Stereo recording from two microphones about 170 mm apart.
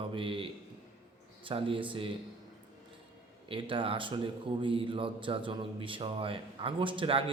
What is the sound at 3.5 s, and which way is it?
A man's voice, 30° right (ahead or behind).